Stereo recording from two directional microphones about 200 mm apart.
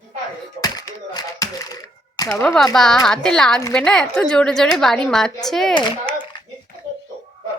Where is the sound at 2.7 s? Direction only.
Centre (ahead or behind).